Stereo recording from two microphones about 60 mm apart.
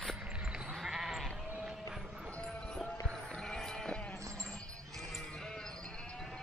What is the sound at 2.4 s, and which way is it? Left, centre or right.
Music, centre.